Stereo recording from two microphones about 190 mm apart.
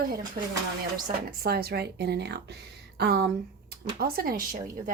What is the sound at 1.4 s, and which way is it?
Speech, 55° right (ahead or behind).